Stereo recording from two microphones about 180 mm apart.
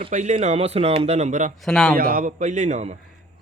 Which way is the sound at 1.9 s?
50° right (ahead or behind).